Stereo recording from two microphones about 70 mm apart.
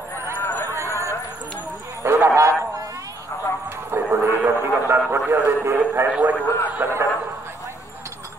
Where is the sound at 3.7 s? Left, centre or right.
Right.